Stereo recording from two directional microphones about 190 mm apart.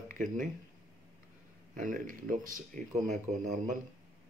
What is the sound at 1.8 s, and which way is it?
Speech, 45° right (ahead or behind).